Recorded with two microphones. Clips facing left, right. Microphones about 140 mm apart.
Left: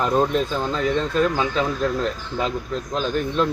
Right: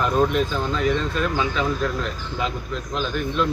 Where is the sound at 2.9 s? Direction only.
35° left (ahead or behind).